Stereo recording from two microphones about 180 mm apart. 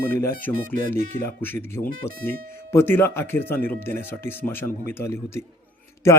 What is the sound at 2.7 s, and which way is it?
Speech, 15° left (ahead or behind).